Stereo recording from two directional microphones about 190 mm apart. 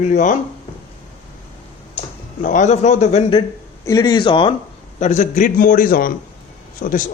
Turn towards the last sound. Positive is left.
turn(degrees=45)  # may be behind; listen again after turning